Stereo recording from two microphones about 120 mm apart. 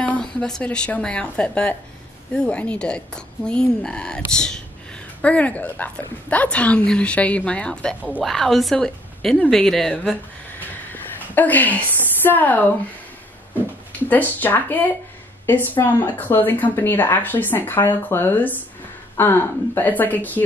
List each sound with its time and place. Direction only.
0.0 s speech: 10° left (ahead or behind)
10.9 s a sound: 15° left (ahead or behind)
14.0 s speech: 15° left (ahead or behind)